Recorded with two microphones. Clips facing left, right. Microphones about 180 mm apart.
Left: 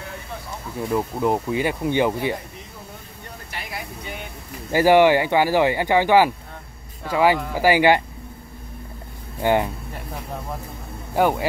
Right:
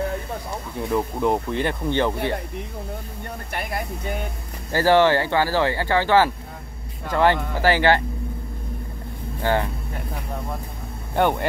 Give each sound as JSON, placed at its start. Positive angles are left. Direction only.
{"t": 0.7, "sound": "speech", "side_deg": 0}
{"t": 3.5, "sound": "speech", "side_deg": -50}
{"t": 4.7, "sound": "speech", "side_deg": 15}
{"t": 9.4, "sound": "speech", "side_deg": 15}
{"t": 11.1, "sound": "speech", "side_deg": 5}